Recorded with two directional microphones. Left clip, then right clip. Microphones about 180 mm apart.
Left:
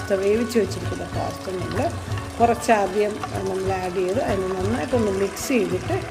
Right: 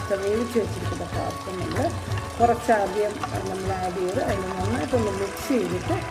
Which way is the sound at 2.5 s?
25° left (ahead or behind).